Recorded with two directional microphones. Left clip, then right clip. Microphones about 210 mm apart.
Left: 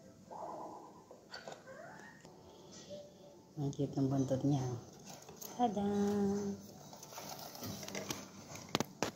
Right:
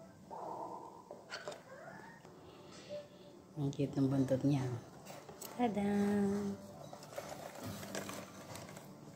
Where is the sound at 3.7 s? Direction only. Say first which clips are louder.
Right 1 dB; 15° right (ahead or behind).